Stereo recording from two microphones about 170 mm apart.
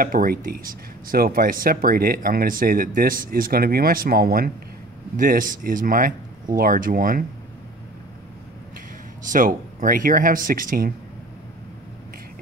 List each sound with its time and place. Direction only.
0.0 s speech: 55° right (ahead or behind)
9.3 s speech: 50° right (ahead or behind)